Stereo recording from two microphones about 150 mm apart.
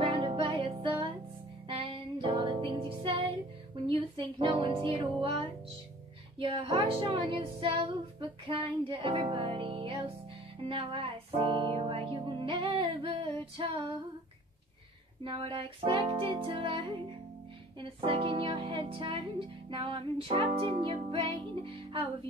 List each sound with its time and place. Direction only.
0.0 s music: 35° right (ahead or behind)
6.3 s speech: 40° right (ahead or behind)
10.7 s music: 35° right (ahead or behind)
15.2 s speech: 35° right (ahead or behind)